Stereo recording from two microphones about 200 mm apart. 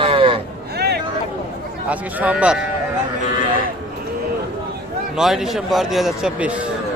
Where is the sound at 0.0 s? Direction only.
25° right (ahead or behind).